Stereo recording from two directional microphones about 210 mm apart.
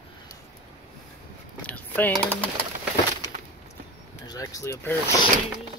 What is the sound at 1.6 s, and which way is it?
Speech, 10° left (ahead or behind).